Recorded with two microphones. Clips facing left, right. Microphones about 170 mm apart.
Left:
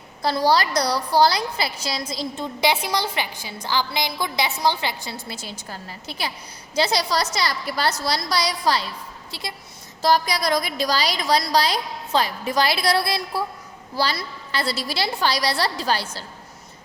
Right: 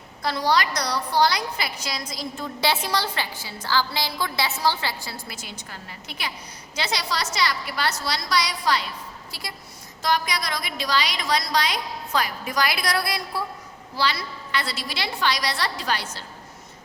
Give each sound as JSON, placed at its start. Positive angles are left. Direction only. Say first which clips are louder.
{"t": 0.2, "sound": "a woman's voice", "louder": "left 3 dB", "side_deg": 30}
{"t": 9.3, "sound": "a woman's voice", "louder": "left 6 dB", "side_deg": 25}
{"t": 10.0, "sound": "a woman's voice", "louder": "left 5 dB", "side_deg": 35}